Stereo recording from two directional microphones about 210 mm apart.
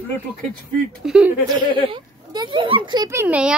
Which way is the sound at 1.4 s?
20° right (ahead or behind).